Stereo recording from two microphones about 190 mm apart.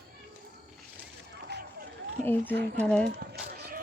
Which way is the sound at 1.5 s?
60° right (ahead or behind).